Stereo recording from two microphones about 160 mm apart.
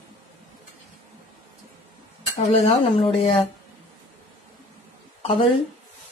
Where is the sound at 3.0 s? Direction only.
40° left (ahead or behind).